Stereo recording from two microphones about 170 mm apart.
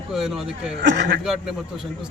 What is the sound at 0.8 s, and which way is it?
Speech, 90° right.